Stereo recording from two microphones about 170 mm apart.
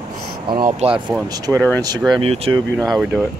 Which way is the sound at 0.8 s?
40° right (ahead or behind).